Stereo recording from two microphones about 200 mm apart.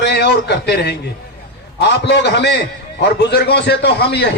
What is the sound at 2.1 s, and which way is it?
A man's voice, 55° left (ahead or behind).